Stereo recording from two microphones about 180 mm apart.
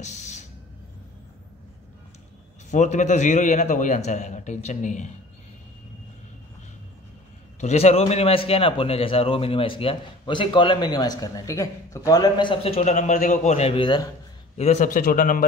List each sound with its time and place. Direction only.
0.0 s a sound: 40° left (ahead or behind)
2.7 s a man's voice: 40° left (ahead or behind)
7.6 s a man's voice: 35° left (ahead or behind)
14.6 s a man's voice: 40° left (ahead or behind)